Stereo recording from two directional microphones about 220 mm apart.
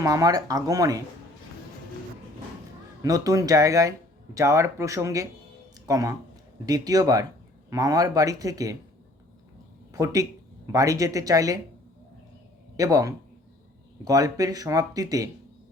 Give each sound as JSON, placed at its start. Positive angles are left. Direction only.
{"t": 0.0, "sound": "speech", "side_deg": -15}
{"t": 3.0, "sound": "speech", "side_deg": -15}
{"t": 9.9, "sound": "speech", "side_deg": -15}
{"t": 12.7, "sound": "speech", "side_deg": -15}